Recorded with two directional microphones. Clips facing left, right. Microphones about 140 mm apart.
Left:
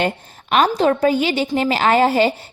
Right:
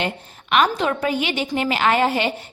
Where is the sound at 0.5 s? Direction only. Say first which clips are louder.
Left 4 dB; 35° left (ahead or behind).